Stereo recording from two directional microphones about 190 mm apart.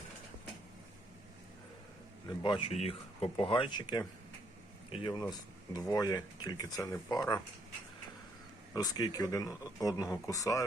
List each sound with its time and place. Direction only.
2.4 s speech: 25° left (ahead or behind)
8.7 s speech: 20° left (ahead or behind)